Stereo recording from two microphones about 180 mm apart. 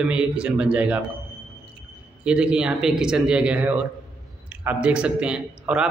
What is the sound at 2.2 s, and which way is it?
A man's voice, 5° right (ahead or behind).